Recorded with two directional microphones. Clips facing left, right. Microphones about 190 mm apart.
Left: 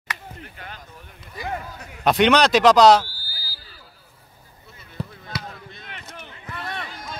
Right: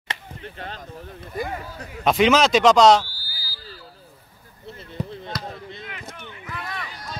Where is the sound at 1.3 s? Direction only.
50° right (ahead or behind).